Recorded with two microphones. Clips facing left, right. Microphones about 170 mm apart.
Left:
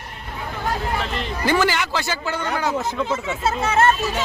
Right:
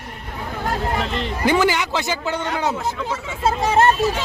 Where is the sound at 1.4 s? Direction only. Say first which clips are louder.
Right 2 dB; 15° right (ahead or behind).